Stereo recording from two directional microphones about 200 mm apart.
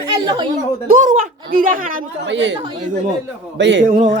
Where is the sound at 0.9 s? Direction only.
40° right (ahead or behind).